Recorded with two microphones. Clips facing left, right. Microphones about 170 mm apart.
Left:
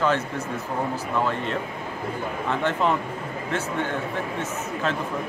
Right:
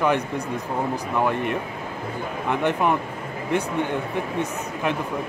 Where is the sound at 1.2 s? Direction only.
15° right (ahead or behind).